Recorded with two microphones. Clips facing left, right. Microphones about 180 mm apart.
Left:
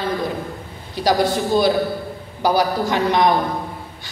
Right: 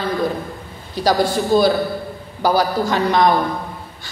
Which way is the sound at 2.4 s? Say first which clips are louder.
Right 1 dB; 20° left (ahead or behind).